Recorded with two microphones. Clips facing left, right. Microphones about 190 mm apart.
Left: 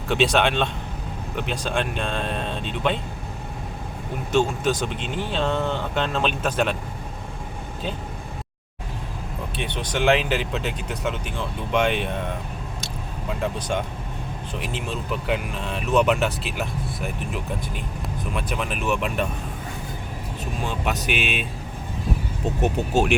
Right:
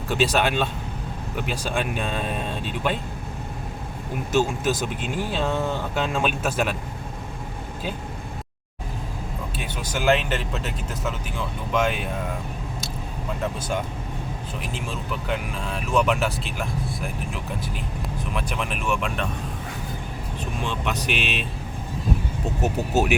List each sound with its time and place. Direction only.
0.1 s speech: centre (ahead or behind)
4.3 s speech: 5° right (ahead or behind)
9.6 s speech: 5° right (ahead or behind)
13.4 s speech: 5° right (ahead or behind)
20.8 s speech: centre (ahead or behind)
22.6 s speech: 5° right (ahead or behind)